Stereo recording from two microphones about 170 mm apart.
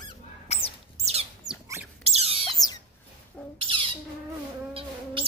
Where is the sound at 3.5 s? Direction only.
30° right (ahead or behind).